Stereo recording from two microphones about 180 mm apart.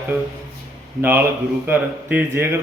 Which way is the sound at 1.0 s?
10° right (ahead or behind).